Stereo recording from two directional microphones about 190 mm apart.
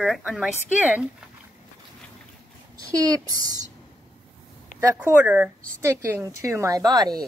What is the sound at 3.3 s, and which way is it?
Speech, 20° right (ahead or behind).